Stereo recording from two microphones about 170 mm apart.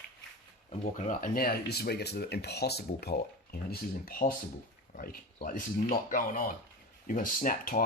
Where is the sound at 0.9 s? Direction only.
50° left (ahead or behind).